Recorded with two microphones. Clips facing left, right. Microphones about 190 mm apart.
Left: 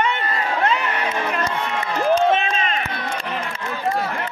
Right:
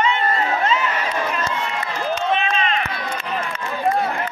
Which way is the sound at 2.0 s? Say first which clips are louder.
Left 5 dB; 45° left (ahead or behind).